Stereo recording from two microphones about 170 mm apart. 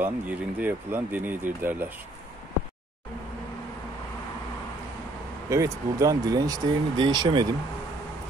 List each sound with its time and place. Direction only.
0.0 s speech: 10° right (ahead or behind)
5.5 s speech: 20° right (ahead or behind)